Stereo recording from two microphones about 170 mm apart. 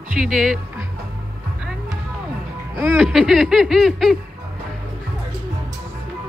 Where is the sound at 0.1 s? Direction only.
5° right (ahead or behind).